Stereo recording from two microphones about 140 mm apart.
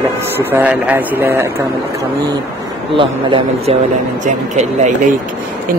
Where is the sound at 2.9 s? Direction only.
35° right (ahead or behind).